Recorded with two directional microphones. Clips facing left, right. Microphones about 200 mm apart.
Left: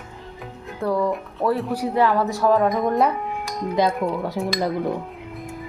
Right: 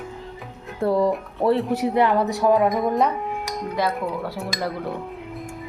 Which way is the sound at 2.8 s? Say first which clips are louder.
Left 1 dB; centre (ahead or behind).